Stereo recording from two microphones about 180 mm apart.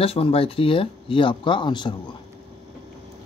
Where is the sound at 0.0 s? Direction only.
30° left (ahead or behind).